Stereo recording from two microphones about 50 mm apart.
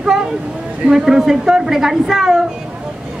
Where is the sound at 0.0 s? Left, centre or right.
Centre.